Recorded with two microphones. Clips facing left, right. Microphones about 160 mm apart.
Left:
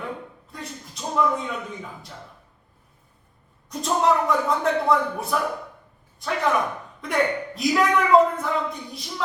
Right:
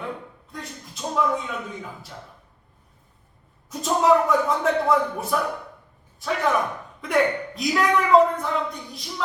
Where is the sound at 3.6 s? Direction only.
Centre (ahead or behind).